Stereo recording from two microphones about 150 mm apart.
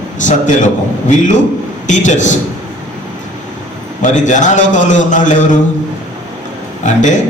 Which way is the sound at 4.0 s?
55° left (ahead or behind).